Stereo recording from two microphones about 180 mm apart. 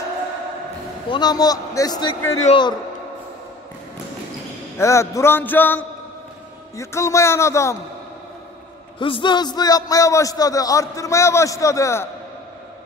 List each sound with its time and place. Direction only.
1.1 s a man's voice: 20° left (ahead or behind)
4.7 s a man's voice: 15° left (ahead or behind)
6.8 s a man's voice: 15° left (ahead or behind)
9.0 s a man's voice: 25° left (ahead or behind)